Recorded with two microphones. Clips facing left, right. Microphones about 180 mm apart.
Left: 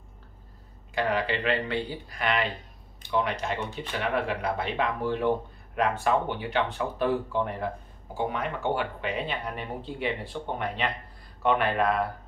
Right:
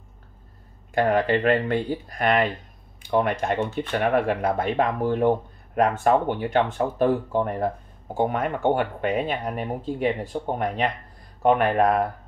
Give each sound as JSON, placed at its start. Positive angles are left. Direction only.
{"t": 0.9, "sound": "speech", "side_deg": -50}